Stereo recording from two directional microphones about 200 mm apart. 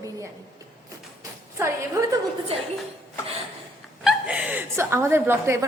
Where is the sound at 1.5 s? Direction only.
15° right (ahead or behind).